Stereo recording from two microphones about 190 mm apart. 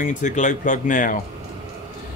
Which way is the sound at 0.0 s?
40° left (ahead or behind).